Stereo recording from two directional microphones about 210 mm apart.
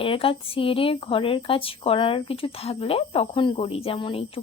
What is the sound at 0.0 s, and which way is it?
Speech, 25° left (ahead or behind).